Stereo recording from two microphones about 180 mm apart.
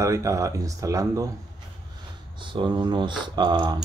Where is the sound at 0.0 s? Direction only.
15° right (ahead or behind).